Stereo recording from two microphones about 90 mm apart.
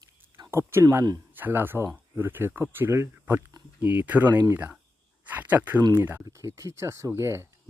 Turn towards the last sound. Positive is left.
turn(degrees=-30)  # may be behind; listen again after turning